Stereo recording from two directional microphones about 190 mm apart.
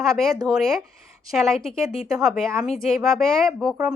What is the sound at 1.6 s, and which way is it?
Speech, 30° left (ahead or behind).